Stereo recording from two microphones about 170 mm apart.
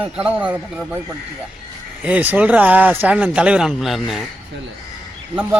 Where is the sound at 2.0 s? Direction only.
10° right (ahead or behind).